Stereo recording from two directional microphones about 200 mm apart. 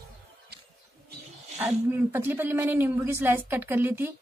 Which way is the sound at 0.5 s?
55° right (ahead or behind).